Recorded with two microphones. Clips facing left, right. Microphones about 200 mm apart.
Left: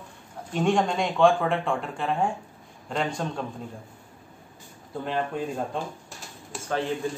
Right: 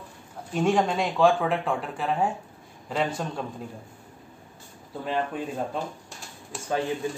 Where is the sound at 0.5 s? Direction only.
Centre (ahead or behind).